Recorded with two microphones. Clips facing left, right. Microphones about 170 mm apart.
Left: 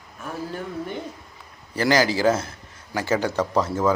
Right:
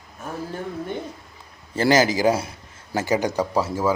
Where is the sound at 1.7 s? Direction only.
20° right (ahead or behind).